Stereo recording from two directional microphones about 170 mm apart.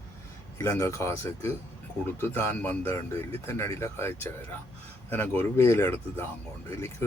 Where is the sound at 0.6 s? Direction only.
15° left (ahead or behind).